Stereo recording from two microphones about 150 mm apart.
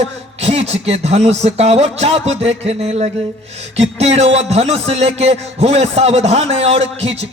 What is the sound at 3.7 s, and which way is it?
Speech, 45° right (ahead or behind).